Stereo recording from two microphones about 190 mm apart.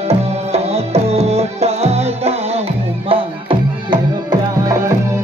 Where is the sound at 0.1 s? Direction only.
35° right (ahead or behind).